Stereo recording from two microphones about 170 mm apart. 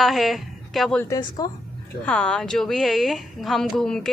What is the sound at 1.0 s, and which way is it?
Speech, 20° left (ahead or behind).